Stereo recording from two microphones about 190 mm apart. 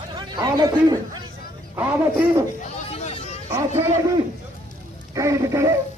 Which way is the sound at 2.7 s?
35° left (ahead or behind).